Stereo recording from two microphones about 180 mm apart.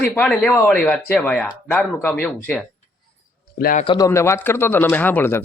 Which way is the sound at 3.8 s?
25° left (ahead or behind).